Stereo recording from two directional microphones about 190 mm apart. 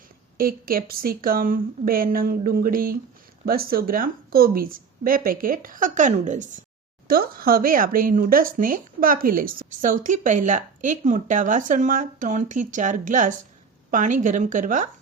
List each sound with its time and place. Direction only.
0.3 s speech: 50° right (ahead or behind)
7.1 s a woman's voice: 50° right (ahead or behind)